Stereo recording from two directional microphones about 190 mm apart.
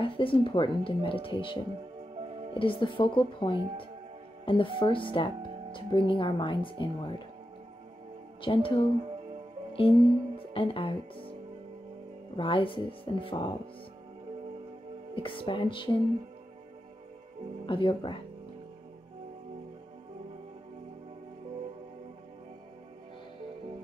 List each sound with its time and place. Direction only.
0.0 s speech: 25° left (ahead or behind)
2.6 s speech: 25° left (ahead or behind)
8.4 s speech: 30° left (ahead or behind)
9.7 s music: 30° left (ahead or behind)
9.9 s music: 20° right (ahead or behind)
10.3 s music: 30° left (ahead or behind)
12.4 s speech: 25° left (ahead or behind)
15.1 s speech: 30° left (ahead or behind)
17.6 s speech: 25° left (ahead or behind)